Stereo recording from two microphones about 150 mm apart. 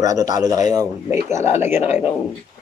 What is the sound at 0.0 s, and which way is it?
Speech, 25° right (ahead or behind).